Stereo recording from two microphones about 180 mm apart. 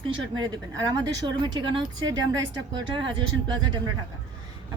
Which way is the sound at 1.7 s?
25° right (ahead or behind).